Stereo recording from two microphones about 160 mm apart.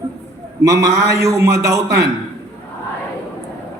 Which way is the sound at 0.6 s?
20° right (ahead or behind).